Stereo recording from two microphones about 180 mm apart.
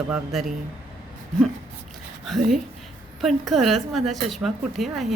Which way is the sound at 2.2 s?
Centre (ahead or behind).